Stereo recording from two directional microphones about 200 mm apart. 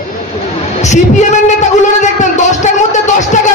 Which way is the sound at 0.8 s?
35° left (ahead or behind).